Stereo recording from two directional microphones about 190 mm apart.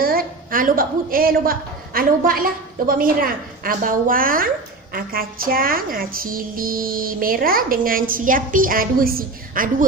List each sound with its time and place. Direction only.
0.0 s a woman's voice: 50° right (ahead or behind)